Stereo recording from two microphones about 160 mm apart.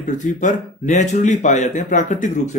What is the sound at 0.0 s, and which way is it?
A man's voice, 50° left (ahead or behind).